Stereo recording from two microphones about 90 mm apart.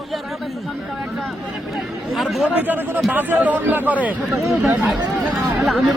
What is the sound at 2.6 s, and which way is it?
A man's voice, 20° right (ahead or behind).